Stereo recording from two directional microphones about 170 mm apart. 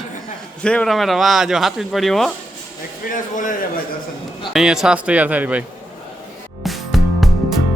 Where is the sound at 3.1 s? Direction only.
50° left (ahead or behind).